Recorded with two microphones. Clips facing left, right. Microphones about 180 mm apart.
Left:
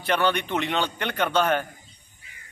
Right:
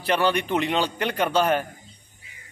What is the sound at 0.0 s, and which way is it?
A man's voice, 5° right (ahead or behind).